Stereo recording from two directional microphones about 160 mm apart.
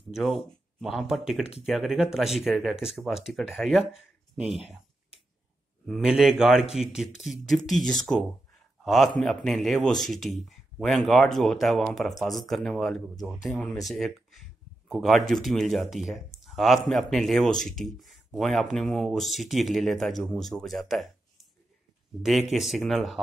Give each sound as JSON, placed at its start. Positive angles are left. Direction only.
{"t": 0.1, "sound": "a man's voice", "side_deg": 0}
{"t": 5.9, "sound": "a man's voice", "side_deg": 0}
{"t": 22.2, "sound": "a man's voice", "side_deg": 0}